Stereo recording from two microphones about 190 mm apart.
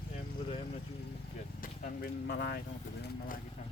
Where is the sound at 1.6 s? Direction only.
50° left (ahead or behind).